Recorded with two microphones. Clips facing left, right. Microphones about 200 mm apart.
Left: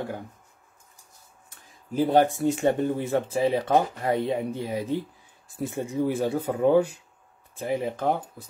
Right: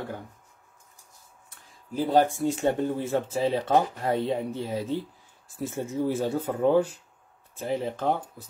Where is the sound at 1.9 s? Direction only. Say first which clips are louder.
Left 2 dB; 20° left (ahead or behind).